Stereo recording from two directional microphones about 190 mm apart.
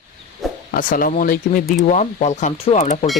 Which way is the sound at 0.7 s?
45° left (ahead or behind).